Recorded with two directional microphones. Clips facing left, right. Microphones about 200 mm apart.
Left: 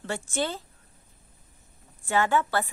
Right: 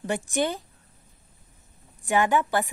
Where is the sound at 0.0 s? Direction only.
15° right (ahead or behind).